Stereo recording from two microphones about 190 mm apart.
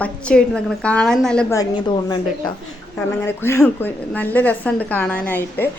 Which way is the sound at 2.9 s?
10° left (ahead or behind).